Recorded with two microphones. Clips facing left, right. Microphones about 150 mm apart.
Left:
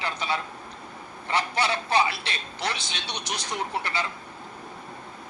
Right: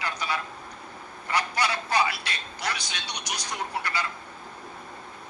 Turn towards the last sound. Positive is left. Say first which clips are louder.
# left 2 dB
turn(degrees=25)  # may be behind; listen again after turning